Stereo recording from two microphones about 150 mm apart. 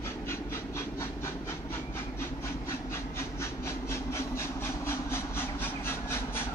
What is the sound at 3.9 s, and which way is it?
Train, 15° left (ahead or behind).